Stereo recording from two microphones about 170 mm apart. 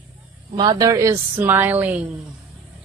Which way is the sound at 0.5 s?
25° right (ahead or behind).